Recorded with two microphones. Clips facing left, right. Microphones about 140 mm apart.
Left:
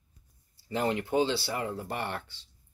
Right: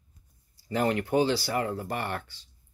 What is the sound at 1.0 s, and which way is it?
Speech, 25° left (ahead or behind).